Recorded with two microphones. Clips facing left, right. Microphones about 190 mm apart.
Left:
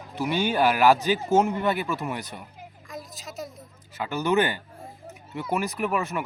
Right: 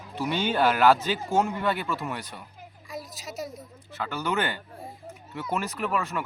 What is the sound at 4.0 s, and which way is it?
Speech, 20° left (ahead or behind).